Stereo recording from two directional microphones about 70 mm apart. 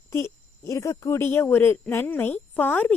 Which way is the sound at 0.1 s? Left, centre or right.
Left.